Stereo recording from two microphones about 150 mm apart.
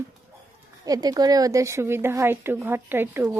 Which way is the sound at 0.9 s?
25° right (ahead or behind).